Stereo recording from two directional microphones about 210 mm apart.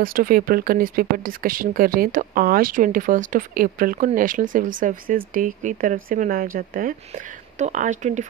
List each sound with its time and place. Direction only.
0.0 s speech: 45° right (ahead or behind)